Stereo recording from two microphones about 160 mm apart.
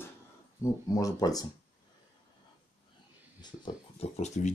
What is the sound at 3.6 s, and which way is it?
Speech, 40° left (ahead or behind).